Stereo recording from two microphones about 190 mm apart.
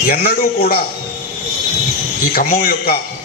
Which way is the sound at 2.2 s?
50° left (ahead or behind).